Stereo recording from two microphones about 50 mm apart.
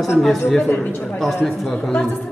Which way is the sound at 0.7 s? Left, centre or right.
Left.